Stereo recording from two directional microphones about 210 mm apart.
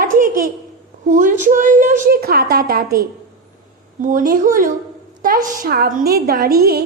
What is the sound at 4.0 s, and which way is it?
A woman's voice, 40° right (ahead or behind).